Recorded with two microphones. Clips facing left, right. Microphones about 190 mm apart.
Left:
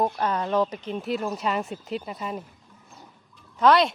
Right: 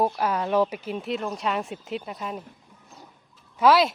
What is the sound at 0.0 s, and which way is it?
Speech, 10° right (ahead or behind).